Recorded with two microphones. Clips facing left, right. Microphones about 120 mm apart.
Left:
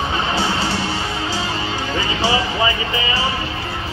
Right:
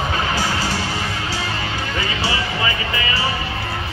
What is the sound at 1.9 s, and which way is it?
Music, 30° left (ahead or behind).